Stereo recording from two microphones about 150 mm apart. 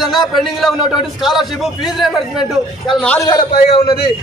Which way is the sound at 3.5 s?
40° left (ahead or behind).